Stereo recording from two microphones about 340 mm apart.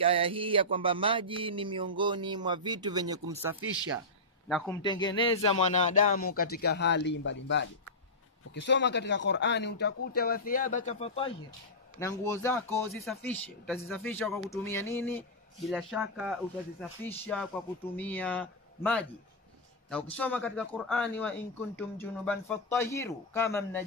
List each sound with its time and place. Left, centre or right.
0.0 s a sound: centre
4.5 s a man's voice: centre; by 7.3 s left
8.5 s a man's voice: left; by 23.8 s centre